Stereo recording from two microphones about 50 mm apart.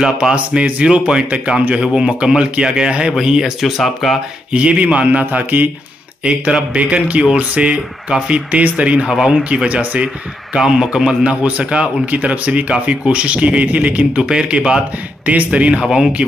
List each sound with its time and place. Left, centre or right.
0.0 s a man's voice: centre
0.6 s a man's voice: right; by 4.2 s centre
4.5 s speech: right
6.2 s speech: right
9.0 s a man's voice: centre
9.4 s speech: right
10.5 s a man's voice: centre
11.2 s speech: right
14.2 s a man's voice: centre
15.2 s speech: right
15.8 s a man's voice: centre